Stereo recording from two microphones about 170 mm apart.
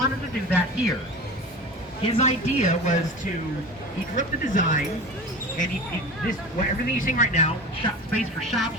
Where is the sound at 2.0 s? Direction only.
35° left (ahead or behind).